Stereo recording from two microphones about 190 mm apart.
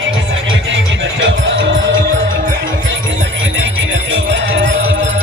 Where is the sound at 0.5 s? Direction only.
75° right (ahead or behind).